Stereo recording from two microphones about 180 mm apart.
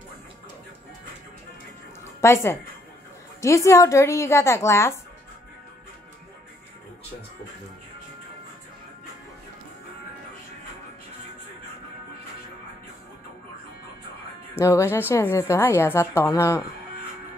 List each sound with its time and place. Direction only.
2.2 s a woman's voice: 15° left (ahead or behind)
14.6 s a woman's voice: 15° left (ahead or behind)